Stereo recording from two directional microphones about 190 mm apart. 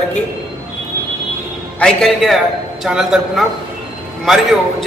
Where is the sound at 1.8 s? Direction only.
5° left (ahead or behind).